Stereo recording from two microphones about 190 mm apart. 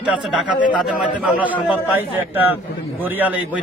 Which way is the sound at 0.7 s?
5° right (ahead or behind).